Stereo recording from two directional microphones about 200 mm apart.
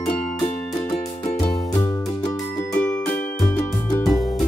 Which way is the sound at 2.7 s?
10° left (ahead or behind).